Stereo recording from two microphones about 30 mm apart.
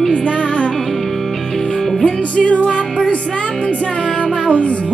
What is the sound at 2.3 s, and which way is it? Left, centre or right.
Music, left.